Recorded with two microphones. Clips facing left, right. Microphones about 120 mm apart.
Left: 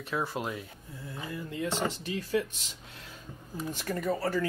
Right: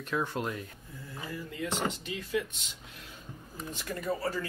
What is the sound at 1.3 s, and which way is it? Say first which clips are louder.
Speech: left 2 dB; 30° left (ahead or behind).